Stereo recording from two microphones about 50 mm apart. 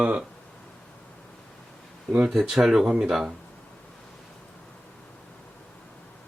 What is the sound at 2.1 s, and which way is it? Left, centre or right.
Speech, centre.